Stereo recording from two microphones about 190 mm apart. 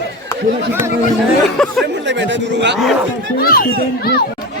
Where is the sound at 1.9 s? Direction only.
70° right (ahead or behind).